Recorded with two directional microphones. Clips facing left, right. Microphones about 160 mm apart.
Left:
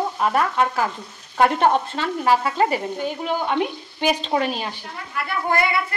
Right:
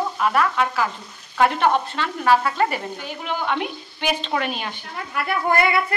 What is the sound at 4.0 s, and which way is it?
Frying, 40° left (ahead or behind).